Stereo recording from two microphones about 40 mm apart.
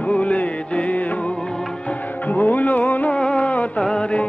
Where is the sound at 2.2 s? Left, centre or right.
Left.